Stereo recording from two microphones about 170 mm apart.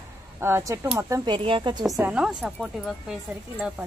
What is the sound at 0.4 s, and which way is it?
Speech, 15° right (ahead or behind).